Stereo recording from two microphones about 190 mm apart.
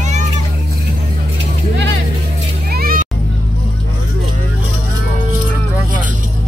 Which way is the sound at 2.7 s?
50° right (ahead or behind).